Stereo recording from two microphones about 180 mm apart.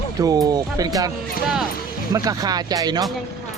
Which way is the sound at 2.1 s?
20° right (ahead or behind).